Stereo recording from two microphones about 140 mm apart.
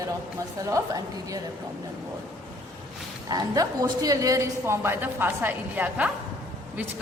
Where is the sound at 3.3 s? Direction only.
25° right (ahead or behind).